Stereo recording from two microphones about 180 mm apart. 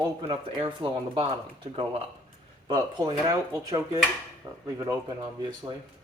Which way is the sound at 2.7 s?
20° right (ahead or behind).